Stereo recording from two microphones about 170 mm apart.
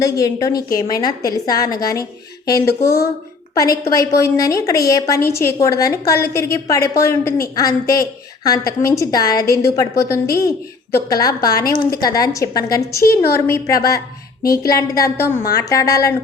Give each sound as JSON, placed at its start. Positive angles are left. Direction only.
{"t": 0.0, "sound": "a woman's voice", "side_deg": 20}